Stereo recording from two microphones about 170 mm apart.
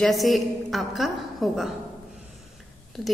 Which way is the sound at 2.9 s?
Centre (ahead or behind).